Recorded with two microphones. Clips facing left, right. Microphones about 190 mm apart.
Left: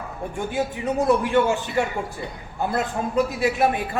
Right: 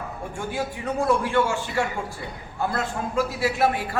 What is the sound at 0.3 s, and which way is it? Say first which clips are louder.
A man's voice: left 4 dB; 20° left (ahead or behind).